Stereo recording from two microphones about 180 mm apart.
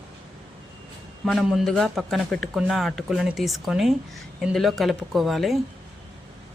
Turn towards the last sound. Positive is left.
turn(degrees=0)  # may be behind; listen again after turning